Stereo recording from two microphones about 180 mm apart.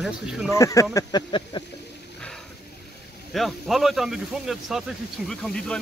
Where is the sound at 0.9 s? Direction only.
25° left (ahead or behind).